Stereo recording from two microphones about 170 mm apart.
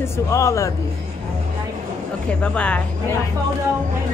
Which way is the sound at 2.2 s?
5° left (ahead or behind).